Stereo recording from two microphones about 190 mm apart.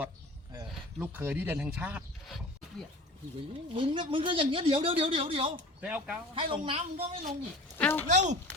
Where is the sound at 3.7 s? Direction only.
25° right (ahead or behind).